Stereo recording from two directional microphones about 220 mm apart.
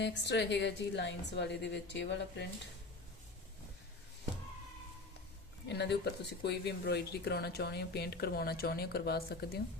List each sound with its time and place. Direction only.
0.0 s speech: 50° left (ahead or behind)
5.6 s speech: 50° left (ahead or behind)